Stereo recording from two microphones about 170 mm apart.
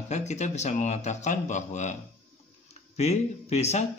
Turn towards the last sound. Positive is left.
turn(degrees=40)  # may be behind; listen again after turning